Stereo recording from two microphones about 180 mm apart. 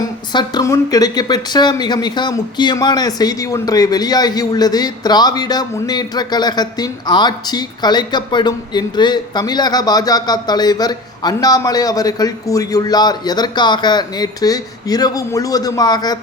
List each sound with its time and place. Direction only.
0.3 s speech: 20° left (ahead or behind)